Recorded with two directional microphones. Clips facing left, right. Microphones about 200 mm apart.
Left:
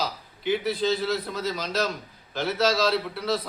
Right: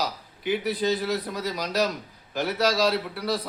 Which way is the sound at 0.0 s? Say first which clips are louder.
Even; 15° right (ahead or behind).